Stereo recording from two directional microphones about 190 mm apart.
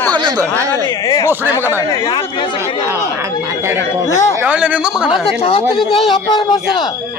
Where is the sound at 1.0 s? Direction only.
20° left (ahead or behind).